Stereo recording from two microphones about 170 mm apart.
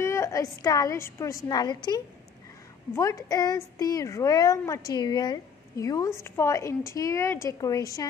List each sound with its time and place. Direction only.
0.0 s speech: 15° left (ahead or behind)